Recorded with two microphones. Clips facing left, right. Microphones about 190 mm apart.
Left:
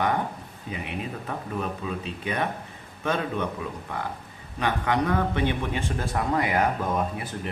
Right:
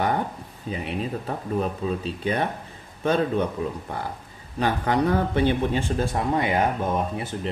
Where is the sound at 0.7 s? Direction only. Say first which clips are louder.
Right 4 dB; 35° right (ahead or behind).